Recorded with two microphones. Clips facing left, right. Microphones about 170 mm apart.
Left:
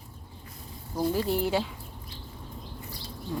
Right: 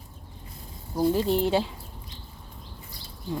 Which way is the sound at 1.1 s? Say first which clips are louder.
Right 1 dB; 25° right (ahead or behind).